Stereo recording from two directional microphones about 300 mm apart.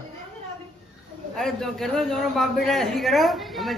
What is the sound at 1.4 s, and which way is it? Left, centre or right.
A man's voice, centre.